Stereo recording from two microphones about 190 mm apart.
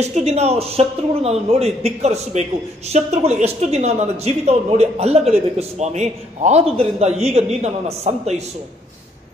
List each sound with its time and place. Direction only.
0.0 s a man's voice: 35° right (ahead or behind)